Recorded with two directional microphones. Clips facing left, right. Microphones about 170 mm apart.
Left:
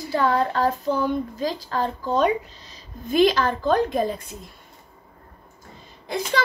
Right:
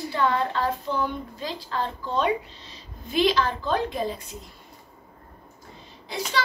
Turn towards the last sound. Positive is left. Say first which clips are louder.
# left 4 dB
turn(degrees=50)  # may be behind; listen again after turning